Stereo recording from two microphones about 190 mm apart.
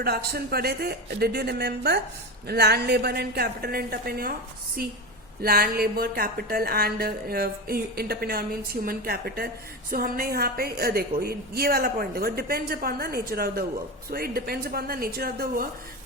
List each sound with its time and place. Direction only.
0.3 s a woman's voice: 55° right (ahead or behind)
5.4 s a woman's voice: 50° right (ahead or behind)